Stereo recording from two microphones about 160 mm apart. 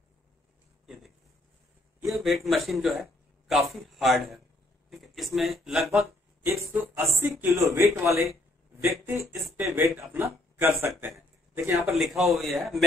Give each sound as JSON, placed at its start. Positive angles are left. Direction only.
{"t": 2.1, "sound": "speech", "side_deg": 0}
{"t": 6.7, "sound": "speech", "side_deg": -10}
{"t": 11.0, "sound": "a sound", "side_deg": -15}
{"t": 11.8, "sound": "speech", "side_deg": 0}